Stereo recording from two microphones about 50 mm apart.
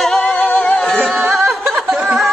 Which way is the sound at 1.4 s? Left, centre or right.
Centre.